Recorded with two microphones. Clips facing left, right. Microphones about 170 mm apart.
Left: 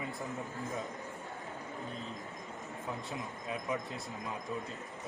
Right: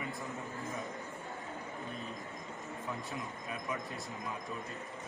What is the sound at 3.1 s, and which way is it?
Speech, 20° left (ahead or behind).